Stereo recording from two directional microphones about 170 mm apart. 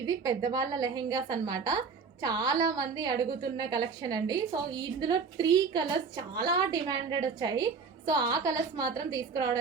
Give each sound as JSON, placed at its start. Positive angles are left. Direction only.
{"t": 0.0, "sound": "a woman's voice", "side_deg": -20}